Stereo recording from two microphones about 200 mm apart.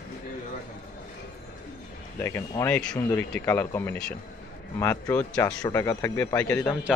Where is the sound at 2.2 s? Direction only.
15° left (ahead or behind).